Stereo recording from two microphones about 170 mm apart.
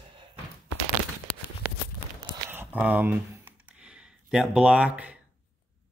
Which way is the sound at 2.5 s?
10° right (ahead or behind).